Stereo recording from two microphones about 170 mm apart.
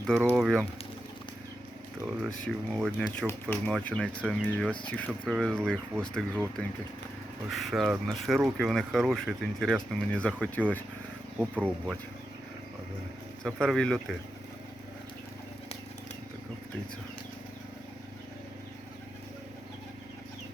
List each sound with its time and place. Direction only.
0.3 s speech: centre (ahead or behind)
2.2 s speech: 5° left (ahead or behind)
7.5 s speech: centre (ahead or behind)
13.4 s speech: 5° left (ahead or behind)